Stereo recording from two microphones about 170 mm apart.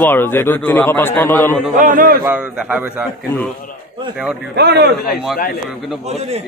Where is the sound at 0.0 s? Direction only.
10° left (ahead or behind).